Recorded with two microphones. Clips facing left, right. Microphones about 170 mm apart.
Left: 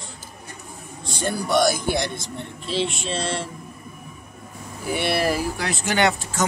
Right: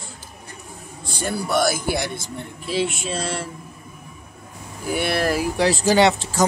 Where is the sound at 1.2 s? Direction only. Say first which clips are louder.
Left 1 dB; 5° right (ahead or behind).